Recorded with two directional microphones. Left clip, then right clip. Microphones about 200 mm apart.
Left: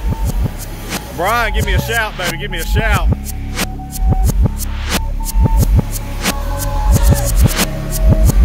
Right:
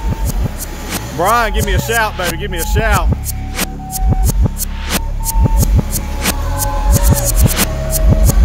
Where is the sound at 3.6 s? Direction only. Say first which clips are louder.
Right 1 dB; centre (ahead or behind).